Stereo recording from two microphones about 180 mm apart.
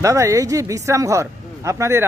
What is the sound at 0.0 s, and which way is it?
Speech, 15° right (ahead or behind).